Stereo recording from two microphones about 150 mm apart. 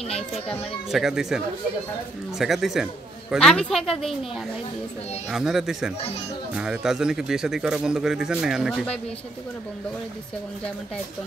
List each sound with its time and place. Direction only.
0.3 s a man's voice: centre (ahead or behind)
5.3 s a man's voice: 5° right (ahead or behind)